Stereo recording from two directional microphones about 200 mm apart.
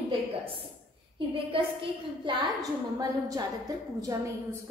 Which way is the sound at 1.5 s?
25° right (ahead or behind).